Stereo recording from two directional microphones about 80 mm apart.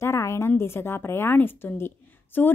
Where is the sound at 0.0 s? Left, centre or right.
Left.